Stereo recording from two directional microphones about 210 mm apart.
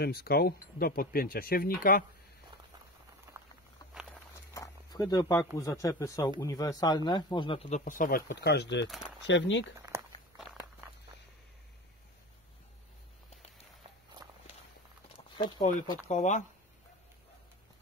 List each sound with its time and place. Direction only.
0.0 s speech: 50° left (ahead or behind)
4.6 s speech: 20° left (ahead or behind)
7.8 s speech: 40° left (ahead or behind)
8.3 s speech: 55° left (ahead or behind)
9.8 s walk: 15° right (ahead or behind)
10.3 s walk: centre (ahead or behind)
14.2 s walk: 10° right (ahead or behind)
15.3 s speech: 20° left (ahead or behind)
16.1 s speech: 35° left (ahead or behind)